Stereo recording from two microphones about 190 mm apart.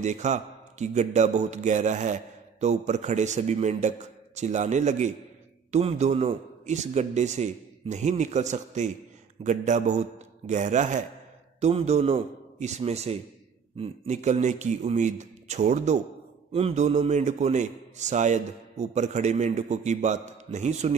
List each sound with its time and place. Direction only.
0.0 s a man's voice: 40° right (ahead or behind)